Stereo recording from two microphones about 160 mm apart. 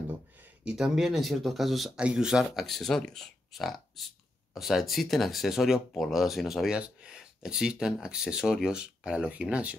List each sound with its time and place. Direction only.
0.7 s speech: 5° right (ahead or behind)